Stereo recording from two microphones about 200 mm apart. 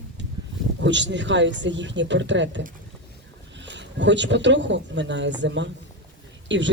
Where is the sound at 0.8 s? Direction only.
65° right (ahead or behind).